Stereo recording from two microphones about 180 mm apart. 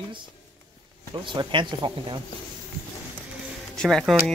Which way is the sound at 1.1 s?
25° right (ahead or behind).